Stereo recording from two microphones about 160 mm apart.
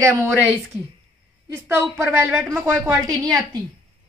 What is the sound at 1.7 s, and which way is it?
A woman's voice, 15° right (ahead or behind).